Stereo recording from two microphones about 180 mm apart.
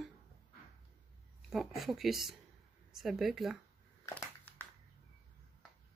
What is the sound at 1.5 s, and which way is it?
Speech, centre (ahead or behind).